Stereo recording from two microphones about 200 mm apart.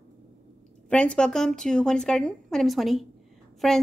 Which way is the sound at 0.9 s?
5° left (ahead or behind).